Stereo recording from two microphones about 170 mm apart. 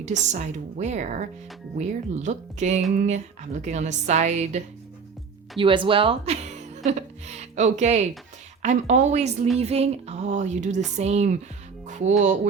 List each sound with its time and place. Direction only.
0.0 s speech: 45° right (ahead or behind)
5.5 s speech: 30° right (ahead or behind)
11.9 s music: 45° right (ahead or behind)